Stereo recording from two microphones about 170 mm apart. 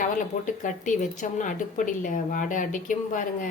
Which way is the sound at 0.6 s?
45° left (ahead or behind).